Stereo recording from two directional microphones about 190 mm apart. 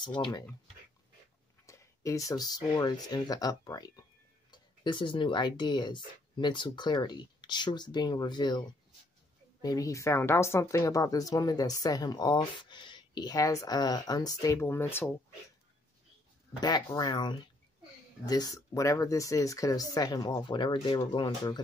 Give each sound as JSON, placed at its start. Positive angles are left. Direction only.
{"t": 0.0, "sound": "speech", "side_deg": 20}
{"t": 1.7, "sound": "speech", "side_deg": 15}
{"t": 16.5, "sound": "speech", "side_deg": 20}